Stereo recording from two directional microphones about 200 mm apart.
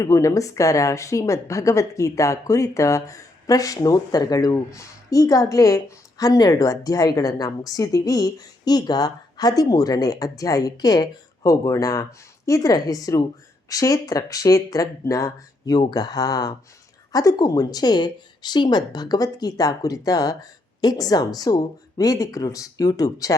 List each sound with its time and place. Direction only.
0.0 s speech: 15° left (ahead or behind)